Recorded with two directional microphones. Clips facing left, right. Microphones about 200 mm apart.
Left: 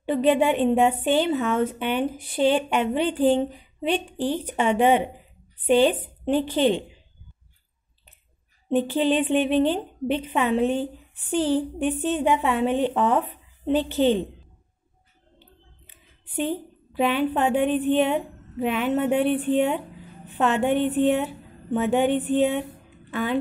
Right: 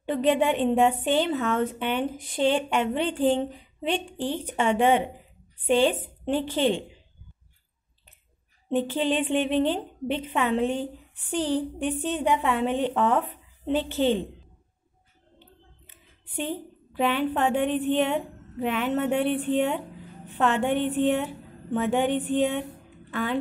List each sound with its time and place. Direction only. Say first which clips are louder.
0.0 s a woman's voice: left 3 dB; 10° left (ahead or behind)
8.6 s a woman's voice: left 3 dB; 15° left (ahead or behind)
11.8 s a woman's voice: left 3 dB; 20° left (ahead or behind)
16.9 s a woman's voice: left 2 dB; 10° left (ahead or behind)